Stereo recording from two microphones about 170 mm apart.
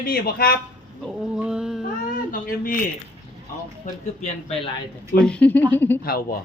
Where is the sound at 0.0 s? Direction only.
60° left (ahead or behind).